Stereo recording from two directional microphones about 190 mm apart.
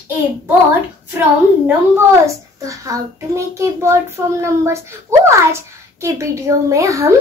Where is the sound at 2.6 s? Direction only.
15° right (ahead or behind).